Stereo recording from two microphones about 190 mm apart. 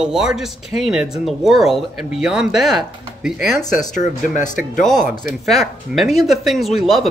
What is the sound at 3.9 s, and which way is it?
Speech, 40° left (ahead or behind).